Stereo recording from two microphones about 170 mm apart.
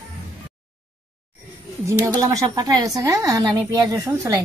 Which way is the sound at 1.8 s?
15° right (ahead or behind).